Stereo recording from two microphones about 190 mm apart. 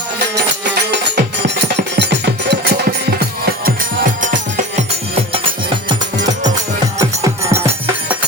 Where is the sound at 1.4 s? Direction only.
65° right (ahead or behind).